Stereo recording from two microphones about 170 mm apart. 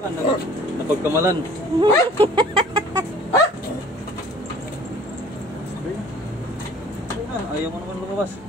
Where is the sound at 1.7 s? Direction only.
30° right (ahead or behind).